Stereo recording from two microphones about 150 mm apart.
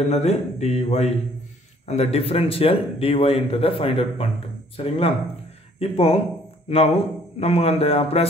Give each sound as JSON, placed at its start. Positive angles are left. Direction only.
{"t": 0.1, "sound": "speech", "side_deg": 45}